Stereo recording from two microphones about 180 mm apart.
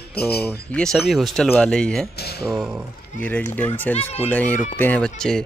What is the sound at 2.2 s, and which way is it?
Speech, 60° left (ahead or behind).